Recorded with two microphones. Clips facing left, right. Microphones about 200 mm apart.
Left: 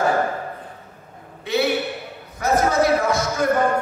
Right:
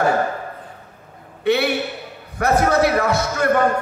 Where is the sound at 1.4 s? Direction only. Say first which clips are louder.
Right 4 dB; 65° right (ahead or behind).